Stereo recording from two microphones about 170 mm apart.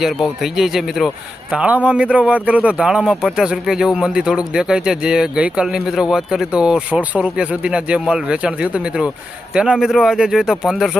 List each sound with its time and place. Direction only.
0.0 s a man's voice: centre (ahead or behind)